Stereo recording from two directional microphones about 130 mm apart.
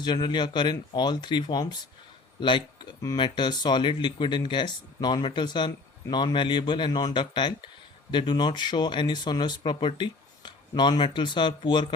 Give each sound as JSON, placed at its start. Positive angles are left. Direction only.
{"t": 0.0, "sound": "speech", "side_deg": 35}